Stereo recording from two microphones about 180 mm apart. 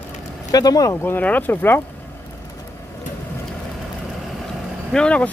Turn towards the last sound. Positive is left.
turn(degrees=5)  # may be behind; listen again after turning